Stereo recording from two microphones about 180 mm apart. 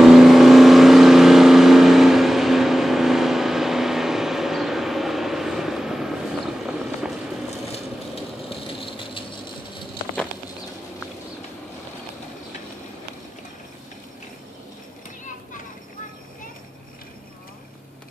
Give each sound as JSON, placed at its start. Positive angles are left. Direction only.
{"t": 0.0, "sound": "vehicle", "side_deg": 0}
{"t": 8.5, "sound": "rattle", "side_deg": 30}